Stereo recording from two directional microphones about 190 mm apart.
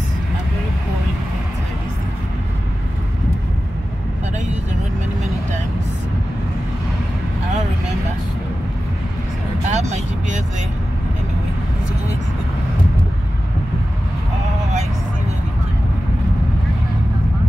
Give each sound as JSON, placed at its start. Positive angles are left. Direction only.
{"t": 9.7, "sound": "vehicle", "side_deg": -35}